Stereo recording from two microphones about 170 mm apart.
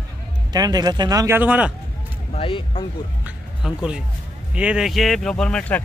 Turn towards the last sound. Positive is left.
turn(degrees=5)  # may be behind; listen again after turning